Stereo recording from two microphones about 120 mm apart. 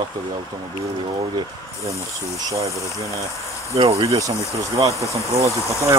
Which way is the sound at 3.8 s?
55° right (ahead or behind).